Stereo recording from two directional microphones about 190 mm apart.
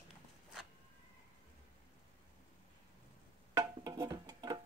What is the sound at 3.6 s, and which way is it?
Music, 20° right (ahead or behind).